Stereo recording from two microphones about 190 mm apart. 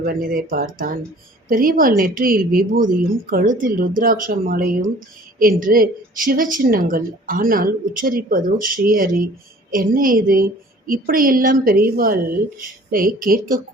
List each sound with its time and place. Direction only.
0.0 s a woman's voice: 50° right (ahead or behind)